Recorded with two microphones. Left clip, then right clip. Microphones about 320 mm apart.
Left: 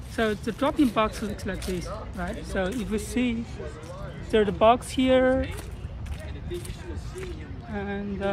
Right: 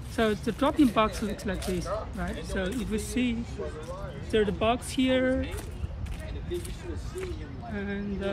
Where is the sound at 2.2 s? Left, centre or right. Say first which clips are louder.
Left 3 dB; centre.